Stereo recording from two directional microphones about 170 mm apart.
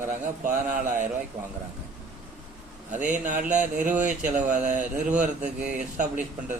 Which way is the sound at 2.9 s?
45° right (ahead or behind).